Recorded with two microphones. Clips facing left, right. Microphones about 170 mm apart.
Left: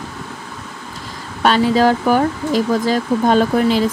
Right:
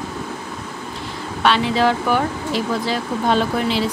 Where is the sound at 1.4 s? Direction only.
40° left (ahead or behind).